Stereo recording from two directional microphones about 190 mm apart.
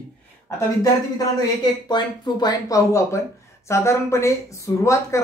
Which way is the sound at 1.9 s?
20° left (ahead or behind).